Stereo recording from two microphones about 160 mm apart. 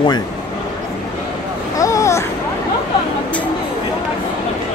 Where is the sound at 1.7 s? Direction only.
20° left (ahead or behind).